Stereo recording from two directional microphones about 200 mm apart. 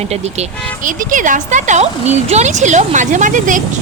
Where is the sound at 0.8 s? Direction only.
40° right (ahead or behind).